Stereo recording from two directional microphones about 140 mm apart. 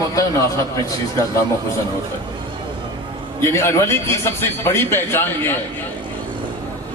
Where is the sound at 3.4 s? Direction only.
20° left (ahead or behind).